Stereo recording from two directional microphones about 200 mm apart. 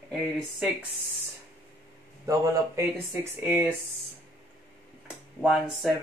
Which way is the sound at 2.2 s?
15° right (ahead or behind).